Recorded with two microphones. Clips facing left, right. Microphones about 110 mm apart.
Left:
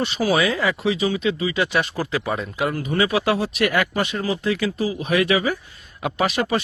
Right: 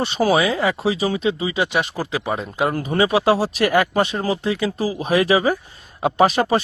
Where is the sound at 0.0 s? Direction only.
35° right (ahead or behind).